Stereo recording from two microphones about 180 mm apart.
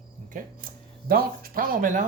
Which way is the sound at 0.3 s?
50° right (ahead or behind).